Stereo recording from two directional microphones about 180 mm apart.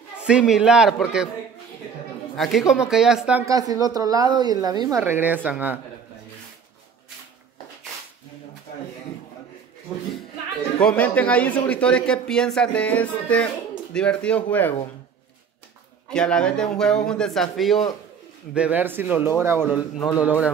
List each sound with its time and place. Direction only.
0.3 s a man's voice: 5° right (ahead or behind)
2.3 s a man's voice: centre (ahead or behind)
3.4 s a woman's voice: 20° right (ahead or behind)
10.8 s speech: 5° left (ahead or behind)
16.1 s a man's voice: 5° left (ahead or behind)